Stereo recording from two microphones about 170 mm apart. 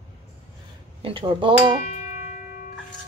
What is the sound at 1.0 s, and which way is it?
Speech, 30° right (ahead or behind).